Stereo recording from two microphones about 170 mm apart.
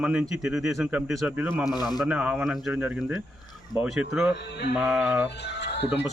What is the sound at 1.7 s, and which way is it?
Speech, 25° left (ahead or behind).